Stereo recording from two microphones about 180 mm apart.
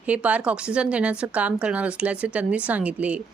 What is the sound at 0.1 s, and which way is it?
Speech, 5° right (ahead or behind).